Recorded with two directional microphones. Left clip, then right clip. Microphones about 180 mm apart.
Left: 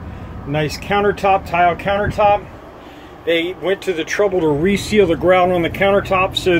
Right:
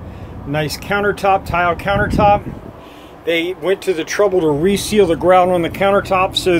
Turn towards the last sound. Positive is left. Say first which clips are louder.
# right 1 dB
turn(degrees=-10)  # may be behind; listen again after turning